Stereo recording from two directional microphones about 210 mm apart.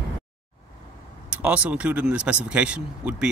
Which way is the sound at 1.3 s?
5° right (ahead or behind).